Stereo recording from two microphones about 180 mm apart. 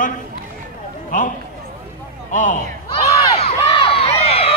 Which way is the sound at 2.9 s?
35° left (ahead or behind).